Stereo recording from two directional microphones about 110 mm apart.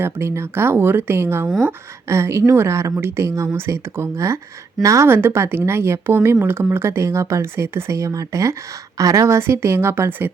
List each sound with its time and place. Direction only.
0.0 s speech: 25° right (ahead or behind)